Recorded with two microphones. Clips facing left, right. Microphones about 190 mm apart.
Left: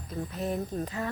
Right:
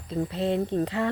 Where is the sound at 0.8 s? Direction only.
85° right.